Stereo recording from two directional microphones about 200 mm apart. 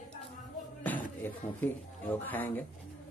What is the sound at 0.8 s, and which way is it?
A man's voice, 10° left (ahead or behind).